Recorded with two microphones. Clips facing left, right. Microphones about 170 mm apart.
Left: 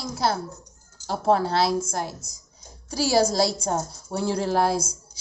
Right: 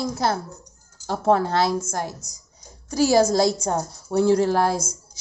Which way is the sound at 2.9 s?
45° right (ahead or behind).